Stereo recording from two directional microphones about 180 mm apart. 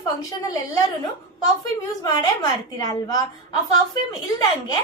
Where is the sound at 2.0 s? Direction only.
20° left (ahead or behind).